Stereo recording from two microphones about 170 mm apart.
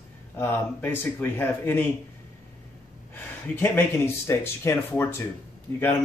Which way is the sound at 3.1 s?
10° left (ahead or behind).